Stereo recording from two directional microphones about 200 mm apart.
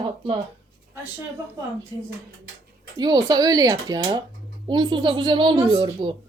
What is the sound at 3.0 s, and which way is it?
A woman's voice, 20° right (ahead or behind).